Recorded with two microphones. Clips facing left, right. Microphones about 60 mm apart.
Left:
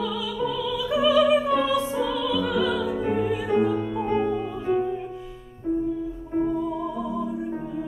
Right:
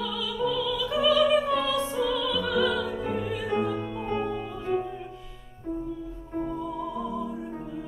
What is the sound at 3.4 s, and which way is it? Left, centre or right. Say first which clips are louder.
Music: left 5 dB; left.